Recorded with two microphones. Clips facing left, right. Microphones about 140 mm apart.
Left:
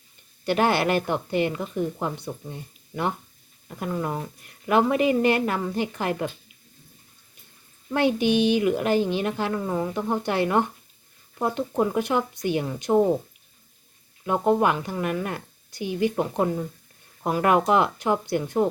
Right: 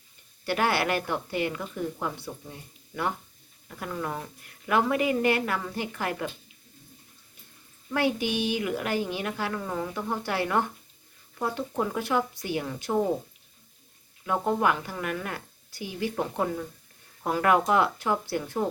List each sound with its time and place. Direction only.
0.4 s a woman's voice: 25° left (ahead or behind)
7.9 s a woman's voice: 20° left (ahead or behind)
14.3 s a woman's voice: 20° left (ahead or behind)